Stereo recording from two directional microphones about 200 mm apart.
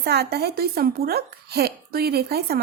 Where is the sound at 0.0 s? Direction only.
50° right (ahead or behind).